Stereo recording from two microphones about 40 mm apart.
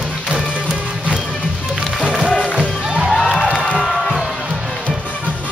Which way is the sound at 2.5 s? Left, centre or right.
Right.